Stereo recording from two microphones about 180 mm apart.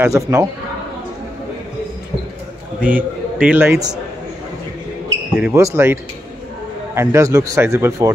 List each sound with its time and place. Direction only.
0.0 s a man's voice: 15° right (ahead or behind)
2.8 s a man's voice: 10° right (ahead or behind)
5.3 s a man's voice: 10° right (ahead or behind)
7.0 s a man's voice: 15° right (ahead or behind)